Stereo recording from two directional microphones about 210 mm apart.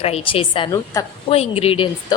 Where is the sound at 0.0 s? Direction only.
25° left (ahead or behind).